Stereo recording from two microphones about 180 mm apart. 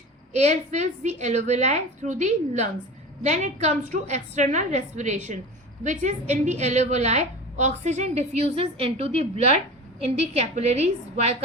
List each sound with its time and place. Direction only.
0.3 s a woman's voice: 40° right (ahead or behind)